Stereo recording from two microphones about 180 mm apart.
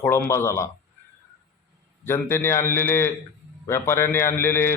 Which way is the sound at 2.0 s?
15° left (ahead or behind).